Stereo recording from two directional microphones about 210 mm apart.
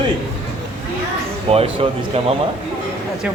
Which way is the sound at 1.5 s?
25° right (ahead or behind).